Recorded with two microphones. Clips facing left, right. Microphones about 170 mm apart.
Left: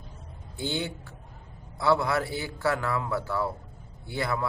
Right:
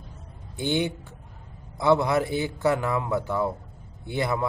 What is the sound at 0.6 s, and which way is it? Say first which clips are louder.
Speech: right 6 dB; 20° right (ahead or behind).